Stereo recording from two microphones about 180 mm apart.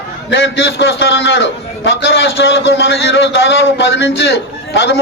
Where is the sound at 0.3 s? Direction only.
75° left (ahead or behind).